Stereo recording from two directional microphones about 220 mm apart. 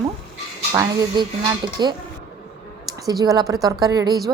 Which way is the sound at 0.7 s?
20° right (ahead or behind).